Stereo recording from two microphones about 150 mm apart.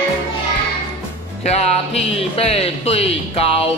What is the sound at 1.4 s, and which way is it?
Speech, 45° left (ahead or behind).